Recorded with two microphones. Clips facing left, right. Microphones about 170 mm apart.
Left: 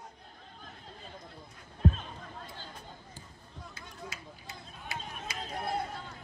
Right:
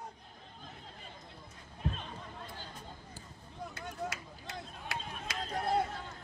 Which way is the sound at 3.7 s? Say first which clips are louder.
Right 7 dB; 75° right (ahead or behind).